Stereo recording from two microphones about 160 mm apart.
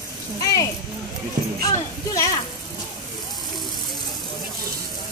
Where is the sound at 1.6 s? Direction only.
25° left (ahead or behind).